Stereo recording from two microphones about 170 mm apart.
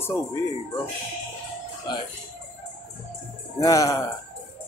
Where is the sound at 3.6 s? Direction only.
20° left (ahead or behind).